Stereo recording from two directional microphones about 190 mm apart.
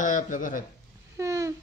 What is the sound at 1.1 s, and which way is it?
Babbling, 15° right (ahead or behind).